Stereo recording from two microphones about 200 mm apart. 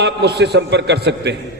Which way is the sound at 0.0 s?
55° right (ahead or behind).